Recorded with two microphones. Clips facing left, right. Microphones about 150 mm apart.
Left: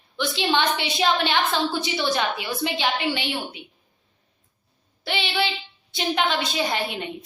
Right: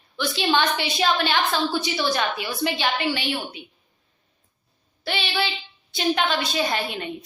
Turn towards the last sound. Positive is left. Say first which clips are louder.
# even
turn(degrees=20)  # may be behind; listen again after turning